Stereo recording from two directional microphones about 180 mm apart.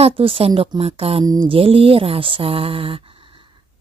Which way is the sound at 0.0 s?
30° right (ahead or behind).